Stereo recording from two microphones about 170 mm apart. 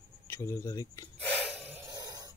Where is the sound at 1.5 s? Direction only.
10° right (ahead or behind).